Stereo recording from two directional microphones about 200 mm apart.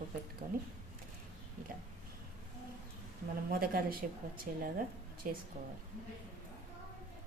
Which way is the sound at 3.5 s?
45° right (ahead or behind).